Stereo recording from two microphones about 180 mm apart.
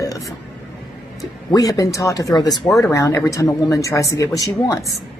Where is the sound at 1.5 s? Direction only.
20° left (ahead or behind).